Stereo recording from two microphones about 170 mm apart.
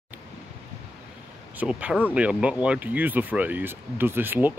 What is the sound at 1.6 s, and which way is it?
Speech, 5° right (ahead or behind).